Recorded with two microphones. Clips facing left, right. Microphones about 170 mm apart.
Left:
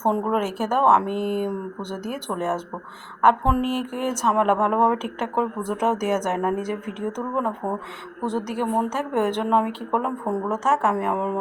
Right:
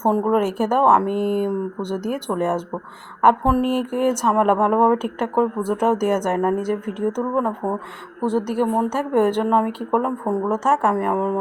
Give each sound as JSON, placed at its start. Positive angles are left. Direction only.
{"t": 0.0, "sound": "speech", "side_deg": -5}
{"t": 1.0, "sound": "speech", "side_deg": -50}
{"t": 1.3, "sound": "speech", "side_deg": -10}